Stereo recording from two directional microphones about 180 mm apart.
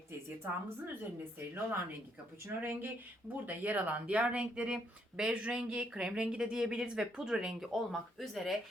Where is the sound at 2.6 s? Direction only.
10° right (ahead or behind).